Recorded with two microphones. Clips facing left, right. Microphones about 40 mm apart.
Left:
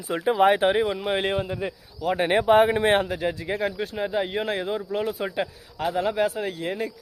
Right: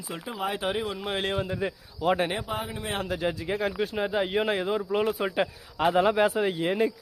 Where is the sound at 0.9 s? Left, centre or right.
Centre.